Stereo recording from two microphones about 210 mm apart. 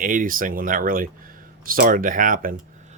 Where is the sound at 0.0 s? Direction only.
40° right (ahead or behind).